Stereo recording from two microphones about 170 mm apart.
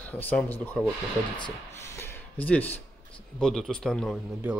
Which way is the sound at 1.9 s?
10° left (ahead or behind).